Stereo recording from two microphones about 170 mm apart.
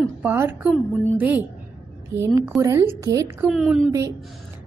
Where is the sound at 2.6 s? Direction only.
20° right (ahead or behind).